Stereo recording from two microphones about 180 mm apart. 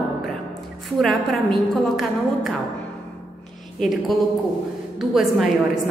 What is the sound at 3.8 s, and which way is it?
A woman's voice, centre (ahead or behind).